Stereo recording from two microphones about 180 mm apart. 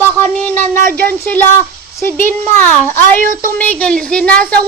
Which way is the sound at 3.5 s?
10° left (ahead or behind).